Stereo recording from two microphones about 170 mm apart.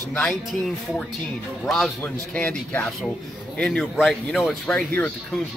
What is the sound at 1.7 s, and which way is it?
Speech, centre (ahead or behind).